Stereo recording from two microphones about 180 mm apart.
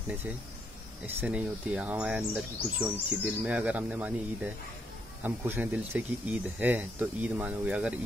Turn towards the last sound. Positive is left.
turn(degrees=-5)  # may be behind; listen again after turning